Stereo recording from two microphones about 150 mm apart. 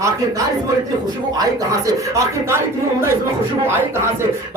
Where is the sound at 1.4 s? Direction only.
20° right (ahead or behind).